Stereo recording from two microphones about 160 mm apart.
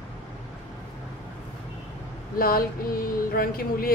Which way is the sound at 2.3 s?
65° left (ahead or behind).